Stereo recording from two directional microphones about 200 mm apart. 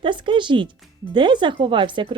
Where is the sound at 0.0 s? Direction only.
25° right (ahead or behind).